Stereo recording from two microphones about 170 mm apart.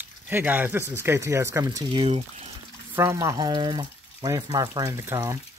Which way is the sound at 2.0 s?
35° right (ahead or behind).